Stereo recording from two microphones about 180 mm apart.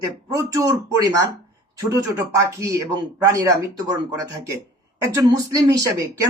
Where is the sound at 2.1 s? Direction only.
15° right (ahead or behind).